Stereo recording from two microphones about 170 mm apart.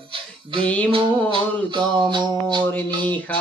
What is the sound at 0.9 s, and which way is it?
Music, 30° right (ahead or behind).